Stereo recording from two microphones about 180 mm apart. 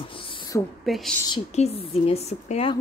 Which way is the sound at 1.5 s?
35° left (ahead or behind).